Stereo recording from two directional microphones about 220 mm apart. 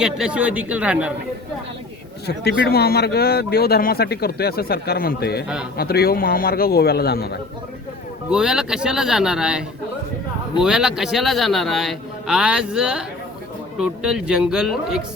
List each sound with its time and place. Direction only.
0.0 s a man's voice: 5° right (ahead or behind)
2.2 s speech: 45° left (ahead or behind)
8.3 s a man's voice: centre (ahead or behind)